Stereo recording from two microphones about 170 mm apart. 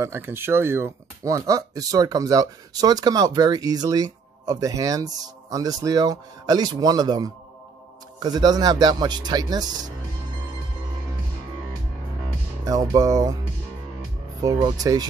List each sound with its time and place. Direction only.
0.0 s speech: 15° right (ahead or behind)
12.6 s speech: 20° right (ahead or behind)
14.4 s speech: 25° right (ahead or behind)